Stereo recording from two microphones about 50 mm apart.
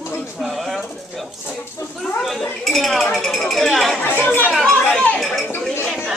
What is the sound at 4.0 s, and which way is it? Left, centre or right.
Speech, left.